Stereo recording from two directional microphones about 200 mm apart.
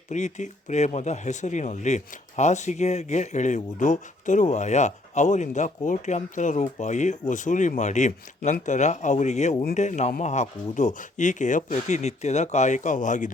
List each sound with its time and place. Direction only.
0.1 s speech: 35° left (ahead or behind)